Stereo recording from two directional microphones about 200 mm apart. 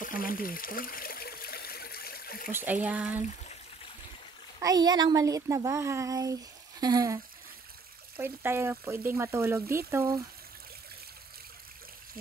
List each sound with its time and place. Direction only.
0.0 s water: 45° left (ahead or behind)
2.5 s a woman's voice: 10° right (ahead or behind)
4.6 s a woman's voice: 20° right (ahead or behind)
8.2 s a woman's voice: 10° right (ahead or behind)